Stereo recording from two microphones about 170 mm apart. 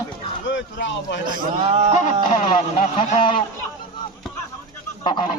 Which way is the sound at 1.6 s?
35° right (ahead or behind).